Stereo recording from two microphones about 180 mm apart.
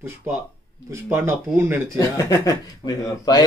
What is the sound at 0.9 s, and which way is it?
Speech, 15° right (ahead or behind).